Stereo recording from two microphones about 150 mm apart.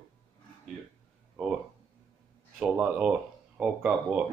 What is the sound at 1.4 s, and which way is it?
Speech, centre (ahead or behind).